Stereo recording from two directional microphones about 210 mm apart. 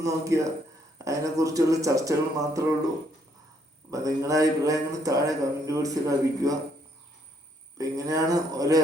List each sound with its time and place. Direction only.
0.0 s speech: 15° right (ahead or behind)
3.9 s speech: 15° right (ahead or behind)
7.8 s speech: 15° right (ahead or behind)